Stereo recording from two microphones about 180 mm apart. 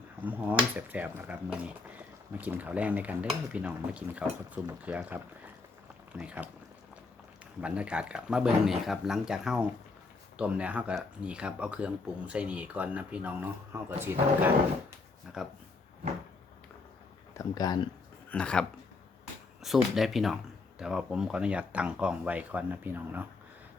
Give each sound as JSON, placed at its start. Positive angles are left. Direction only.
{"t": 0.3, "sound": "speech", "side_deg": -10}
{"t": 7.6, "sound": "speech", "side_deg": -5}
{"t": 17.3, "sound": "speech", "side_deg": 20}
{"t": 18.3, "sound": "speech", "side_deg": 5}
{"t": 19.6, "sound": "speech", "side_deg": 0}